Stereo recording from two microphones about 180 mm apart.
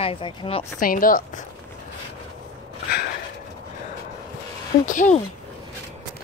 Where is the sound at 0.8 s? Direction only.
50° left (ahead or behind).